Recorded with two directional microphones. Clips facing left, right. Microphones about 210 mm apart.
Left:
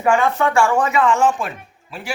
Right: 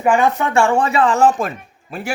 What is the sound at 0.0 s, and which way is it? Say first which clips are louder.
A man's voice: right 1 dB; 15° right (ahead or behind).